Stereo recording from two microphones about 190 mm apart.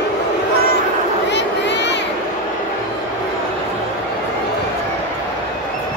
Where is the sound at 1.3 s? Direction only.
65° left (ahead or behind).